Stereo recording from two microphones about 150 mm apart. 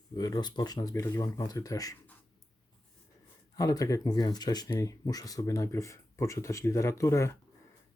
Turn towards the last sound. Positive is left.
turn(degrees=20)  # may be behind; listen again after turning